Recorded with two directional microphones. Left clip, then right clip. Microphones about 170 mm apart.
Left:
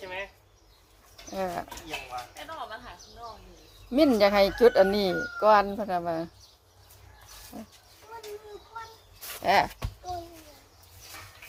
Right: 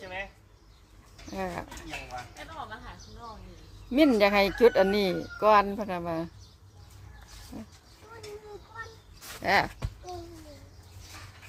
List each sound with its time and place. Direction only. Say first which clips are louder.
1.3 s speech: left 3 dB; 15° right (ahead or behind)
2.3 s speech: left 2 dB; 30° left (ahead or behind)
3.9 s speech: left 1 dB; 20° right (ahead or behind)
9.4 s speech: left 2 dB; 20° right (ahead or behind)